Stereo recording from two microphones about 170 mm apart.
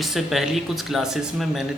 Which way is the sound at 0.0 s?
Centre (ahead or behind).